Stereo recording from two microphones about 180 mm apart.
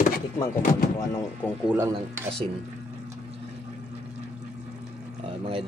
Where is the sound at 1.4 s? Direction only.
10° left (ahead or behind).